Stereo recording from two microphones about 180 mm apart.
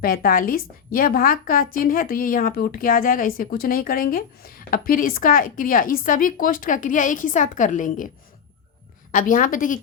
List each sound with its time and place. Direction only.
0.0 s a woman's voice: 55° left (ahead or behind)
9.1 s a woman's voice: 50° left (ahead or behind)